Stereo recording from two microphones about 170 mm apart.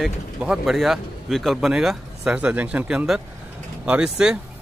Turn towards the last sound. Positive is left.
turn(degrees=-5)  # may be behind; listen again after turning